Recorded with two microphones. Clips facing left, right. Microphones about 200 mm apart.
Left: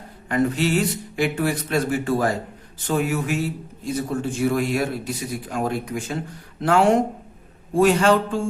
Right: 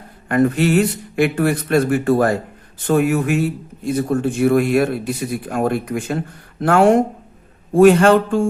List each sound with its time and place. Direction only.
0.3 s speech: 55° right (ahead or behind)